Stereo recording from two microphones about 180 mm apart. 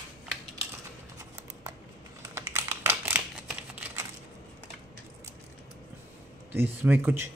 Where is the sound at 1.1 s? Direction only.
15° right (ahead or behind).